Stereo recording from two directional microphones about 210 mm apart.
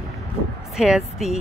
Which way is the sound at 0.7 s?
Centre (ahead or behind).